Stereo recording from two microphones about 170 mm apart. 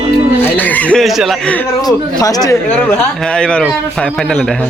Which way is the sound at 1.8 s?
20° left (ahead or behind).